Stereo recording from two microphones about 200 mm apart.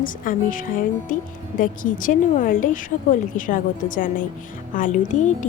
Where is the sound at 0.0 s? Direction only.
40° left (ahead or behind).